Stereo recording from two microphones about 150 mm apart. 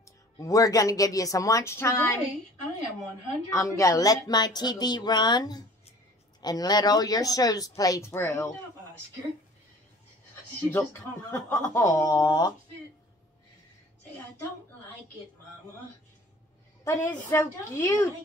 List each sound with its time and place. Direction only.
0.4 s speech: 20° left (ahead or behind)
3.4 s speech: 20° left (ahead or behind)
10.7 s speech: 15° left (ahead or behind)
16.8 s a woman's voice: 15° left (ahead or behind)